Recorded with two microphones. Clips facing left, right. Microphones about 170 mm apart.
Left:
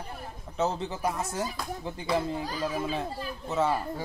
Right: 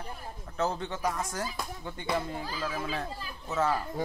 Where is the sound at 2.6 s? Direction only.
20° left (ahead or behind).